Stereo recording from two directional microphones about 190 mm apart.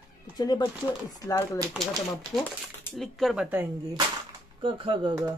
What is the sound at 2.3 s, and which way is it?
Speech, centre (ahead or behind).